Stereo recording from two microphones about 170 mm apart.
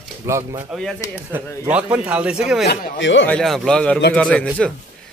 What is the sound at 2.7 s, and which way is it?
Speech, 90° left.